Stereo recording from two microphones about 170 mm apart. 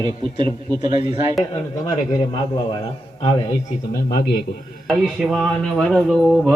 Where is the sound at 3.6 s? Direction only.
50° left (ahead or behind).